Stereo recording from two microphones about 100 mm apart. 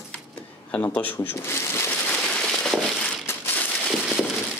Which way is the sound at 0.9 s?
20° left (ahead or behind).